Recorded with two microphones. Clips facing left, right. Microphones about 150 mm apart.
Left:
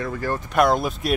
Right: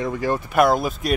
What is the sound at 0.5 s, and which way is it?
Speech, centre (ahead or behind).